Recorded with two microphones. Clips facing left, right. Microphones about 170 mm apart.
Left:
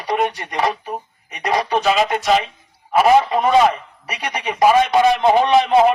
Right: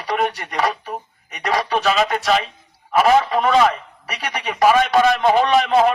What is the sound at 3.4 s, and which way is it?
A man's voice, 15° left (ahead or behind).